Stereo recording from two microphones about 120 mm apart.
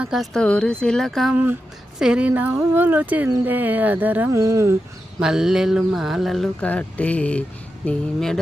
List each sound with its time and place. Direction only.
0.0 s mantra: centre (ahead or behind)
1.3 s speech: 15° right (ahead or behind)
4.3 s speech: 25° right (ahead or behind)
5.2 s mantra: 5° right (ahead or behind)
6.7 s speech: 10° left (ahead or behind)
7.9 s mantra: 5° left (ahead or behind)